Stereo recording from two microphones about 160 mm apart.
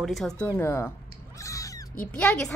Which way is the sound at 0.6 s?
15° left (ahead or behind).